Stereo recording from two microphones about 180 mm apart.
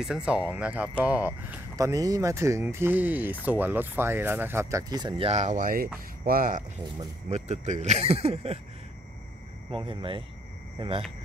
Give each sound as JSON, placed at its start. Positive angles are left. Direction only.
{"t": 0.0, "sound": "speech", "side_deg": -5}
{"t": 1.8, "sound": "speech", "side_deg": -20}
{"t": 7.2, "sound": "speech", "side_deg": -40}
{"t": 9.7, "sound": "speech", "side_deg": -30}